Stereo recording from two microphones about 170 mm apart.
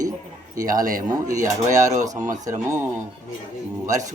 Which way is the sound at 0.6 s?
50° right (ahead or behind).